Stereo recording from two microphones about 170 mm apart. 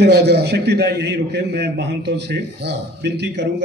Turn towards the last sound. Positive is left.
turn(degrees=-90)